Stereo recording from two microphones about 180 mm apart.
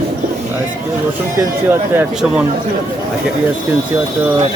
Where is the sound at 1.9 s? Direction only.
5° right (ahead or behind).